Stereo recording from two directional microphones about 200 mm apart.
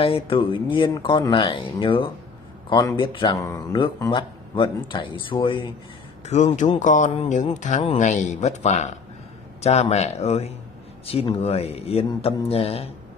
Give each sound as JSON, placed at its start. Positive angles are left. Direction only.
{"t": 0.0, "sound": "speech", "side_deg": 30}
{"t": 6.2, "sound": "speech", "side_deg": 35}